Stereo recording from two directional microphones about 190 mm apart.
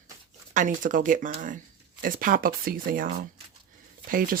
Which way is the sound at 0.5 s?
45° right (ahead or behind).